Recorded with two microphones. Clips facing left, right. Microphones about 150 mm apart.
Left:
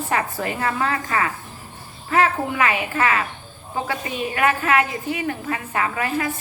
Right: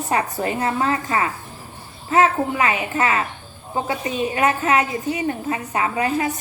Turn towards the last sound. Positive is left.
turn(degrees=-20)  # may be behind; listen again after turning